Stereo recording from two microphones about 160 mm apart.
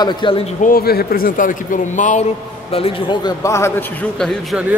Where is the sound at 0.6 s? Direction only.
65° left (ahead or behind).